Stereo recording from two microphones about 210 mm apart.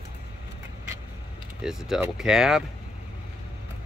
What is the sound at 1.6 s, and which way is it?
Speech, 5° right (ahead or behind).